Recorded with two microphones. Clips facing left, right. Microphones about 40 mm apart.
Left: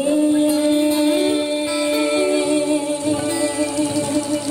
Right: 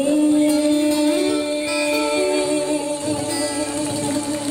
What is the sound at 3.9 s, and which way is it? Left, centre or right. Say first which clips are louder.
Music: left 2 dB; right.